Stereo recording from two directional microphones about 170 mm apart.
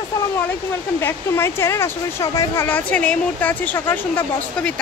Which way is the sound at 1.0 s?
15° left (ahead or behind).